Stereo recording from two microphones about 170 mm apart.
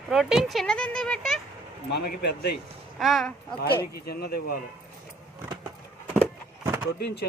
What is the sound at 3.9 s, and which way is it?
Speech, 65° left (ahead or behind).